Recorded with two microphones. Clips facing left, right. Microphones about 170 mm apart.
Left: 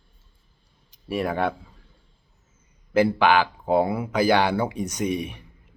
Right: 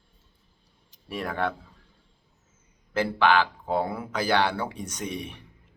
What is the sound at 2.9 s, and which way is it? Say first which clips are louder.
Speech: left 4 dB; 10° left (ahead or behind).